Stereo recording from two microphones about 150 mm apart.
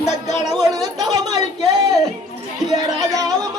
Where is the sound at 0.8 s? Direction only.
25° right (ahead or behind).